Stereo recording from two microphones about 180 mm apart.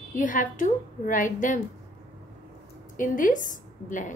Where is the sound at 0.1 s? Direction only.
45° left (ahead or behind).